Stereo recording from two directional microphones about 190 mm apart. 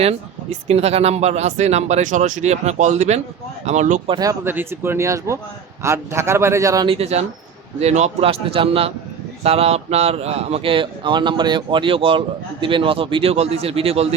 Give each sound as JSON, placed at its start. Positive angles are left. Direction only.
{"t": 0.7, "sound": "speech", "side_deg": -35}
{"t": 4.1, "sound": "speech", "side_deg": -20}
{"t": 6.8, "sound": "speech", "side_deg": -30}